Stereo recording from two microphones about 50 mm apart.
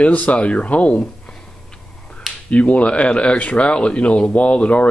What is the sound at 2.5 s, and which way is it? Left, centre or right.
Speech, left.